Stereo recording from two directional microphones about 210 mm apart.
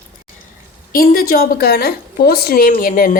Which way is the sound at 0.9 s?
45° left (ahead or behind).